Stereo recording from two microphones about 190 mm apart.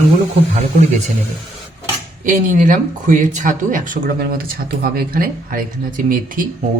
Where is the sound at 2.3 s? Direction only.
45° right (ahead or behind).